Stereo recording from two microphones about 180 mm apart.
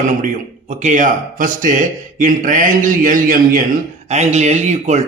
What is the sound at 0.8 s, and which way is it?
Speech, 45° right (ahead or behind).